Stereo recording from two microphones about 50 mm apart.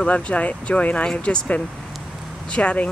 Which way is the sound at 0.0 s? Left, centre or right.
Left.